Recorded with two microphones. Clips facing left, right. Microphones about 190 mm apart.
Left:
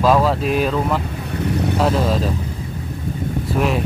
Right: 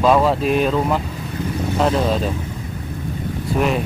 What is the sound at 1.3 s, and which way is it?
Vehicle, 70° left (ahead or behind).